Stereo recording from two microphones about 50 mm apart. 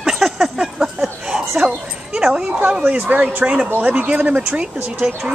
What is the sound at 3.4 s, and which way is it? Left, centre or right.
Speech, centre.